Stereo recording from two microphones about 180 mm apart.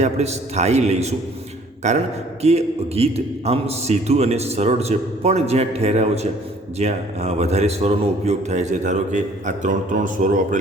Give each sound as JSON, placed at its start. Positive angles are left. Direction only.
{"t": 0.0, "sound": "a man's voice", "side_deg": -35}